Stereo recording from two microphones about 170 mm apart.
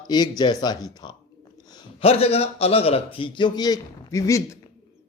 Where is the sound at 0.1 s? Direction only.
25° left (ahead or behind).